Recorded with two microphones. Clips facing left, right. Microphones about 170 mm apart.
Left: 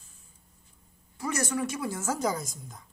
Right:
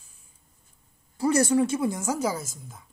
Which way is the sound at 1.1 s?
30° right (ahead or behind).